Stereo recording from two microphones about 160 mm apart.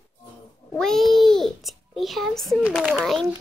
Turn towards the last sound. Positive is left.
turn(degrees=0)  # may be behind; listen again after turning